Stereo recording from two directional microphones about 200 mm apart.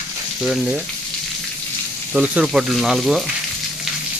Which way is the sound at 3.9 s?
Centre (ahead or behind).